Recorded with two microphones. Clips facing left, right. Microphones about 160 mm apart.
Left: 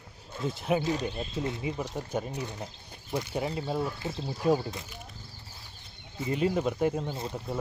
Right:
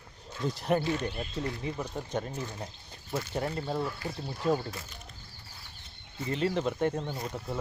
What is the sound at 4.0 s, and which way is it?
Speech, 25° left (ahead or behind).